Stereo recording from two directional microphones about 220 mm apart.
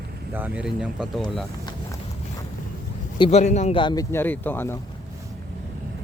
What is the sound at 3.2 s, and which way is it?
A man's voice, 30° left (ahead or behind).